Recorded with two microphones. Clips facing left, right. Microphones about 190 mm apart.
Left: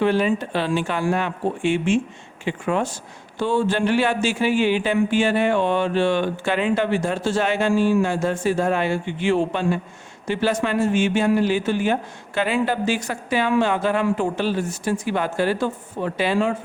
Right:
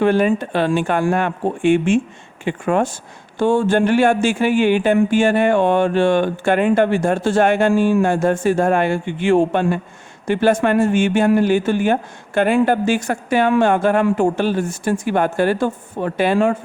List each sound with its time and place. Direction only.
0.0 s speech: 50° right (ahead or behind)